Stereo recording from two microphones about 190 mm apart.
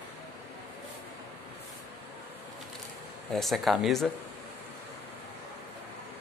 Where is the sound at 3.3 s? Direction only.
Centre (ahead or behind).